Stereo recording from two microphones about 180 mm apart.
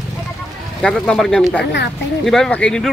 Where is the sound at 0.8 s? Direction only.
5° left (ahead or behind).